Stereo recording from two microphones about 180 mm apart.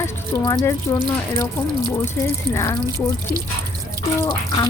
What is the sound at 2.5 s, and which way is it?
Speech, 15° left (ahead or behind).